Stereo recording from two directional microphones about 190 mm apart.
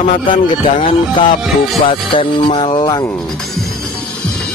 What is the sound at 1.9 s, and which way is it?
Speech, 25° left (ahead or behind).